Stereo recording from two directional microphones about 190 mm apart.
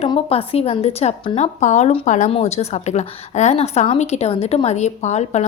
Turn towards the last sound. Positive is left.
turn(degrees=35)  # may be behind; listen again after turning